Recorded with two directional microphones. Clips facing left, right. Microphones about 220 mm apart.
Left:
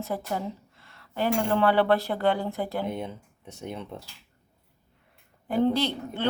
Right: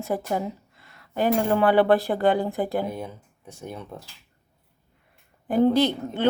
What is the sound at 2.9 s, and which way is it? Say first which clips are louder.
Speech: even; 25° left (ahead or behind).